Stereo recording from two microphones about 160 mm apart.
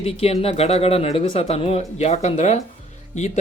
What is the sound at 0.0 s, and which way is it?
Speech, 40° left (ahead or behind).